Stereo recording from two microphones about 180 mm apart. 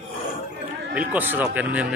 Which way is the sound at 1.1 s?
10° right (ahead or behind).